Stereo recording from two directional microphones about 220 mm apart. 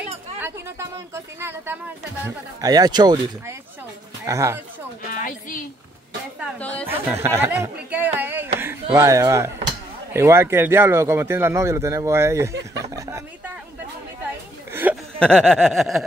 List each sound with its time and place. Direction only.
0.4 s speech: 10° right (ahead or behind)
5.1 s a woman's voice: 35° left (ahead or behind)
6.6 s speech: 5° left (ahead or behind)
6.9 s speech: 10° right (ahead or behind)
12.9 s a sound: 15° right (ahead or behind)
14.7 s chuckle: 10° right (ahead or behind)
15.1 s a sound: 5° left (ahead or behind)